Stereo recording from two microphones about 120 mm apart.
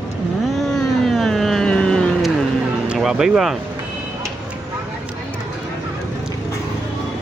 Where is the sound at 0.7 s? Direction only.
5° left (ahead or behind).